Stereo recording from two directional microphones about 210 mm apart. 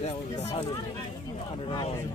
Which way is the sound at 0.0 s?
30° left (ahead or behind).